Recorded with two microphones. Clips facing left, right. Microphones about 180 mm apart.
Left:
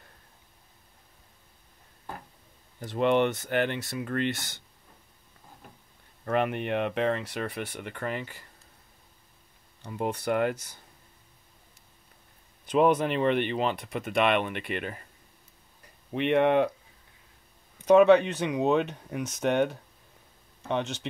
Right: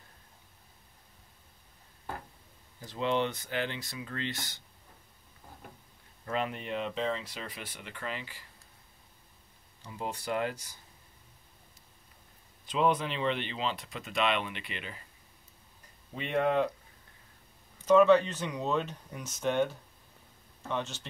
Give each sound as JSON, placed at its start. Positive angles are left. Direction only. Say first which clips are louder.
{"t": 2.8, "sound": "speech", "louder": "left 7 dB", "side_deg": 65}
{"t": 6.2, "sound": "speech", "louder": "left 7 dB", "side_deg": 60}
{"t": 9.8, "sound": "speech", "louder": "left 7 dB", "side_deg": 55}
{"t": 12.7, "sound": "speech", "louder": "left 6 dB", "side_deg": 55}
{"t": 16.1, "sound": "speech", "louder": "left 6 dB", "side_deg": 70}
{"t": 17.8, "sound": "speech", "louder": "left 4 dB", "side_deg": 65}